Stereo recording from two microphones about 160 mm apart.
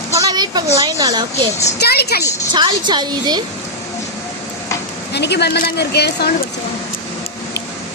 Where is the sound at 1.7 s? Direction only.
85° left.